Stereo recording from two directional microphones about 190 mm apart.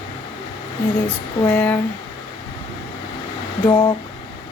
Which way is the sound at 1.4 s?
10° left (ahead or behind).